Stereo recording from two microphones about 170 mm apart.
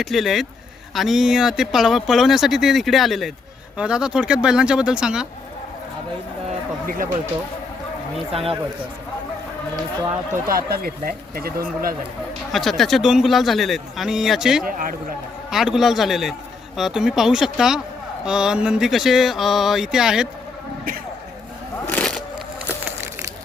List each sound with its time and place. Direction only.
0.0 s speech: centre (ahead or behind)
6.8 s speech: 55° right (ahead or behind)
8.3 s speech: 35° right (ahead or behind)
10.4 s speech: 60° right (ahead or behind)
12.5 s speech: centre (ahead or behind)
14.6 s speech: 55° right (ahead or behind)
15.4 s speech: centre (ahead or behind)
21.8 s vehicle: 5° left (ahead or behind)